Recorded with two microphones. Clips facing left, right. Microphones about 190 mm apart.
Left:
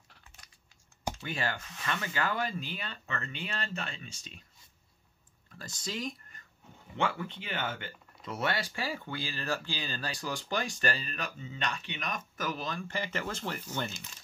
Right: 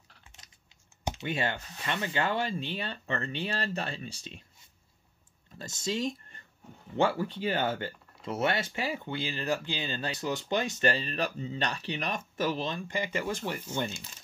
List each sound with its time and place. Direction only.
1.0 s speech: 20° right (ahead or behind)
5.5 s speech: 25° right (ahead or behind)